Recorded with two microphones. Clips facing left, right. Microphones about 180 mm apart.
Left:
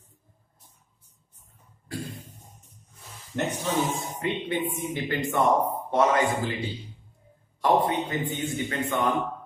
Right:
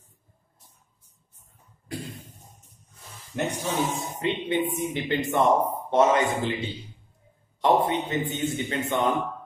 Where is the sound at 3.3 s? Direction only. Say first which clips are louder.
Even; 15° right (ahead or behind).